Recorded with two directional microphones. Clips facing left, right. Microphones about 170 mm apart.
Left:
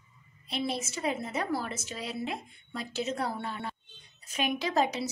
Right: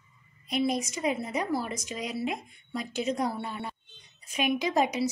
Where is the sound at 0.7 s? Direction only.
15° right (ahead or behind).